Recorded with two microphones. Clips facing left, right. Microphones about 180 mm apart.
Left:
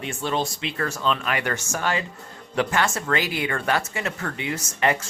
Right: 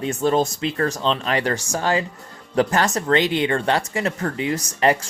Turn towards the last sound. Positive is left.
turn(degrees=-35)  # may be behind; listen again after turning